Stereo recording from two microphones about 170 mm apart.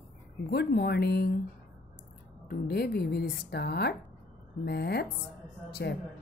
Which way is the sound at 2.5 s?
70° left (ahead or behind).